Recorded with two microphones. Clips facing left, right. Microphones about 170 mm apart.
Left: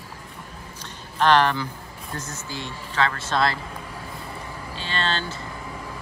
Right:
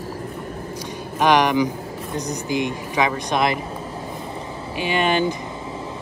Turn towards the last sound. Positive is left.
turn(degrees=-15)  # may be behind; listen again after turning